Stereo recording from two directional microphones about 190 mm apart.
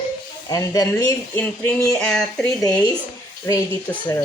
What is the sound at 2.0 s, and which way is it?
Speech, 5° left (ahead or behind).